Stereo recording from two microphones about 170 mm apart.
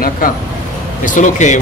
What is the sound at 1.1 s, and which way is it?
Speech, 45° left (ahead or behind).